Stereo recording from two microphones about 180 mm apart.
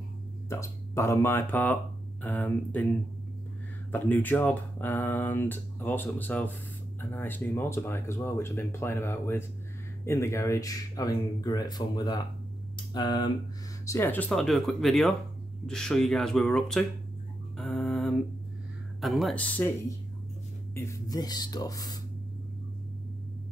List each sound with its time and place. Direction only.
0.5 s speech: 15° left (ahead or behind)
3.9 s speech: 10° left (ahead or behind)
13.8 s speech: 10° left (ahead or behind)
17.6 s music: centre (ahead or behind)
18.9 s speech: centre (ahead or behind)
20.7 s speech: 15° left (ahead or behind)